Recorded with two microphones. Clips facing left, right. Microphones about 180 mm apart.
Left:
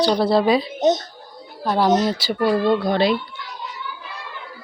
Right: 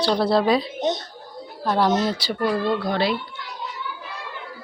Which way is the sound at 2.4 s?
20° left (ahead or behind).